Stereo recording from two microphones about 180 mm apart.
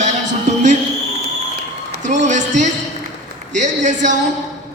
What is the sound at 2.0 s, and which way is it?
A woman's voice, 40° right (ahead or behind).